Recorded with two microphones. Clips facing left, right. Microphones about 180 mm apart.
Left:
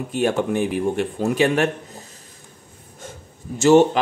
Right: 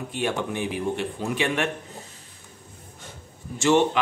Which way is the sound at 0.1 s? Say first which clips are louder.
Left 7 dB; 45° left (ahead or behind).